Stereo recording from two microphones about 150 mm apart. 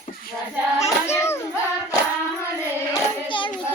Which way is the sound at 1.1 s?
15° left (ahead or behind).